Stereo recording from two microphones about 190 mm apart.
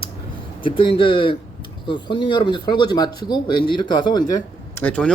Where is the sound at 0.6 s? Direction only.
30° left (ahead or behind).